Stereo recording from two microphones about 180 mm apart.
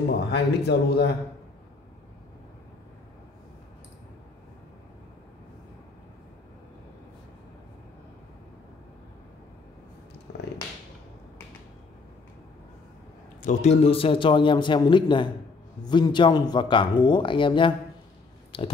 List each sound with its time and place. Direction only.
0.3 s a man's voice: 65° left (ahead or behind)
10.3 s a sound: 75° left (ahead or behind)
13.4 s speech: 40° left (ahead or behind)